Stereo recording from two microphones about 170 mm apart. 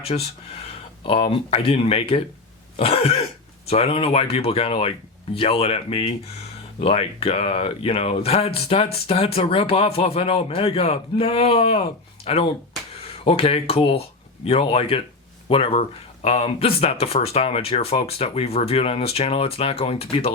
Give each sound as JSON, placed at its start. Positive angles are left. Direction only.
{"t": 1.0, "sound": "speech", "side_deg": 35}
{"t": 2.7, "sound": "cough", "side_deg": 35}
{"t": 3.7, "sound": "speech", "side_deg": 35}